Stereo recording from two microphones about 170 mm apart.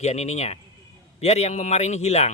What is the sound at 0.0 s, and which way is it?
Speech, 40° left (ahead or behind).